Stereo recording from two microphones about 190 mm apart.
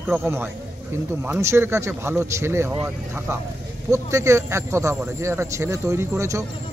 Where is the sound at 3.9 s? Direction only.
15° right (ahead or behind).